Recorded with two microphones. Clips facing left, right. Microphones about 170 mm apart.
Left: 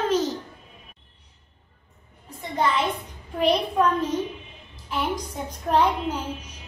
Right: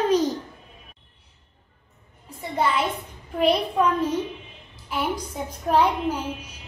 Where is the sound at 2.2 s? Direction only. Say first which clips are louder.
Even; 10° right (ahead or behind).